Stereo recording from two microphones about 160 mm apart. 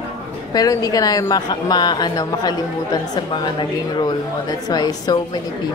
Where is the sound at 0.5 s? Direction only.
25° left (ahead or behind).